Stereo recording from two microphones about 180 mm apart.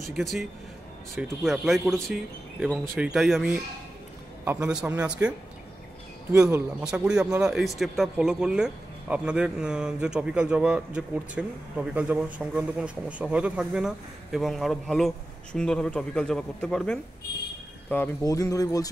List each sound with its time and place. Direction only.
0.1 s speech: centre (ahead or behind)
6.8 s speech: 5° right (ahead or behind); by 18.9 s 20° left (ahead or behind)